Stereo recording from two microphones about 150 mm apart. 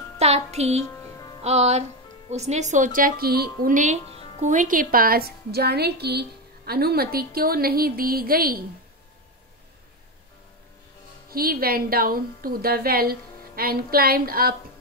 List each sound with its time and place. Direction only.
0.2 s speech: 45° right (ahead or behind)
1.0 s music: 25° left (ahead or behind)
1.4 s a woman's voice: 50° right (ahead or behind); by 8.6 s 80° right
11.2 s a woman's voice: 85° right